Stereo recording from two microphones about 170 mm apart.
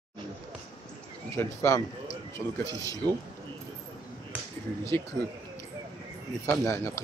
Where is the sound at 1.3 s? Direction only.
15° left (ahead or behind).